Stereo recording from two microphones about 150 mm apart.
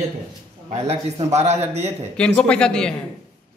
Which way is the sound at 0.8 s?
45° right (ahead or behind).